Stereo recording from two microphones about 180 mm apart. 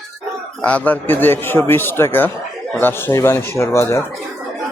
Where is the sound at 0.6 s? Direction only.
10° left (ahead or behind).